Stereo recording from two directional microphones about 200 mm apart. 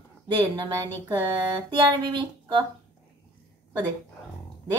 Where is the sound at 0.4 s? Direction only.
20° right (ahead or behind).